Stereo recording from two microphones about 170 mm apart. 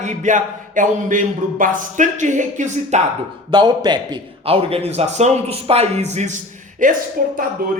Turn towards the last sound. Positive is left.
turn(degrees=-55)  # may be behind; listen again after turning